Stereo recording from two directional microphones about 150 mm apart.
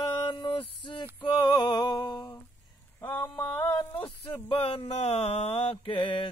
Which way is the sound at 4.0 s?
35° left (ahead or behind).